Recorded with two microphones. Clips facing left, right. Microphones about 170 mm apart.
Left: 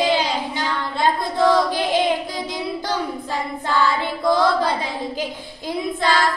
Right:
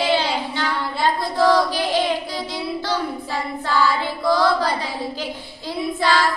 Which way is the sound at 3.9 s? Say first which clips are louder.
Even; 20° left (ahead or behind).